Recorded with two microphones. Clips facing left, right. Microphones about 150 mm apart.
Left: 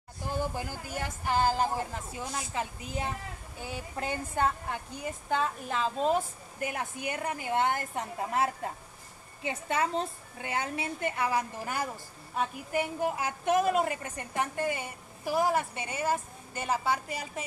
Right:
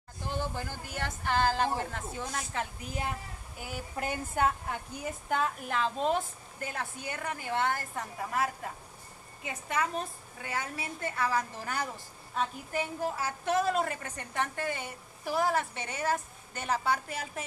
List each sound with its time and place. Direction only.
0.4 s a woman's voice: 10° left (ahead or behind)
6.6 s a woman's voice: 15° left (ahead or behind); by 17.5 s centre (ahead or behind)